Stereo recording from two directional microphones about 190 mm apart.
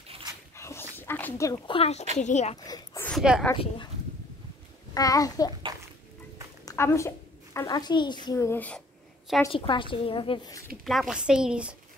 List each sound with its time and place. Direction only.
0.6 s dog: 15° left (ahead or behind)
1.7 s speech: 35° left (ahead or behind)
2.6 s a sound: 15° left (ahead or behind)
3.1 s speech: centre (ahead or behind)
3.5 s a woman's voice: 25° left (ahead or behind)
4.9 s a woman's voice: 20° left (ahead or behind)
5.7 s a sound: 20° right (ahead or behind)
6.6 s a woman's voice: 15° left (ahead or behind)
9.5 s a woman's voice: 25° left (ahead or behind)
10.8 s a woman's voice: centre (ahead or behind)